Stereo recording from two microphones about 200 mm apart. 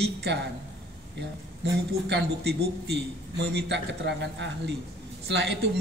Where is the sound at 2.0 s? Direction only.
55° right (ahead or behind).